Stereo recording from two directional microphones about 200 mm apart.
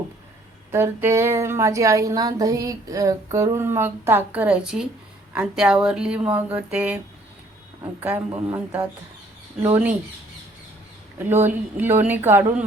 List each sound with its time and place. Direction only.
0.7 s speech: 10° right (ahead or behind)
8.0 s speech: 10° right (ahead or behind)
11.2 s speech: 10° right (ahead or behind)